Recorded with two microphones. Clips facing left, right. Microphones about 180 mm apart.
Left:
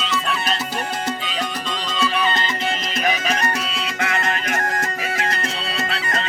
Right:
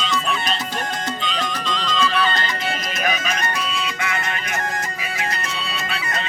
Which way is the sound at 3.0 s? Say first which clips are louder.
Left 3 dB; 30° left (ahead or behind).